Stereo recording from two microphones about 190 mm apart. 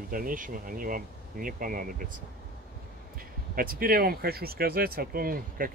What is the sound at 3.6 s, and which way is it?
Speech, 50° right (ahead or behind).